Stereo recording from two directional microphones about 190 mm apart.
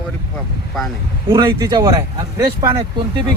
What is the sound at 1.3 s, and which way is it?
A man's voice, 20° right (ahead or behind).